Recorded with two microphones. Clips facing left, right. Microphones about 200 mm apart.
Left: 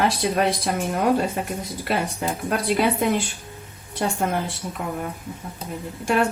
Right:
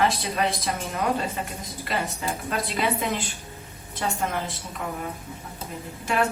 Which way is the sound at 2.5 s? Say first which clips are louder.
Left 6 dB; 50° left (ahead or behind).